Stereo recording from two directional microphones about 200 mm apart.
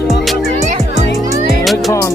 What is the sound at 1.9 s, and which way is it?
Speech, 15° left (ahead or behind).